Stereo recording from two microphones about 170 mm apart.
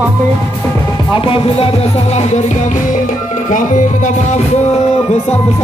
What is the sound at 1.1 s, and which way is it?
Music, 30° left (ahead or behind).